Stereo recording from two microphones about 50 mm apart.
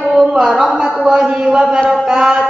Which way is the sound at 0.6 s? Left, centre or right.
Centre.